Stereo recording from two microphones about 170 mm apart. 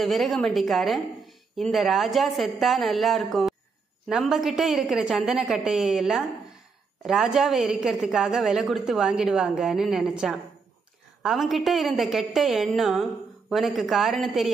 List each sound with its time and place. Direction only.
0.0 s a woman's voice: centre (ahead or behind)